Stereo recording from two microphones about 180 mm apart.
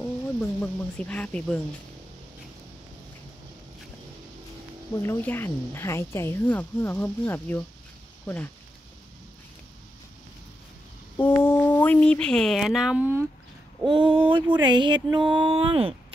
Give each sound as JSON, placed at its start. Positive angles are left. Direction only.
{"t": 0.0, "sound": "speech", "side_deg": 10}
{"t": 4.9, "sound": "a woman's voice", "side_deg": 15}
{"t": 11.2, "sound": "speech", "side_deg": 10}
{"t": 14.3, "sound": "speech", "side_deg": -25}